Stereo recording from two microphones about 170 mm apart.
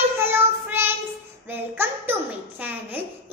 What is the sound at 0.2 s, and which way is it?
Child singing, 10° right (ahead or behind).